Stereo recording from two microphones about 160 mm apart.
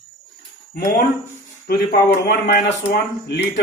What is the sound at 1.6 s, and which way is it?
Speech, 80° left.